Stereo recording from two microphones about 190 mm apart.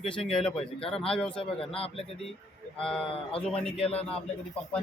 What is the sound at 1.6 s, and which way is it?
Speech, 30° left (ahead or behind).